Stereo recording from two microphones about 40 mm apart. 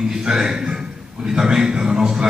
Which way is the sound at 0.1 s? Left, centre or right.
Centre.